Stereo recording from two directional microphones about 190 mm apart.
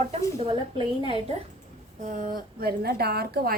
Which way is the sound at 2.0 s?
40° right (ahead or behind).